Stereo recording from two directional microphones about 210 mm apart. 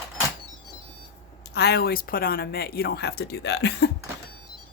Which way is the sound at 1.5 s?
50° left (ahead or behind).